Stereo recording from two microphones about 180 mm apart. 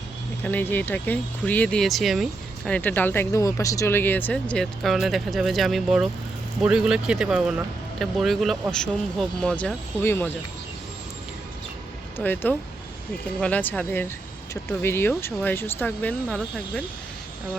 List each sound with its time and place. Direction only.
0.4 s speech: 10° left (ahead or behind)
12.1 s speech: 10° left (ahead or behind)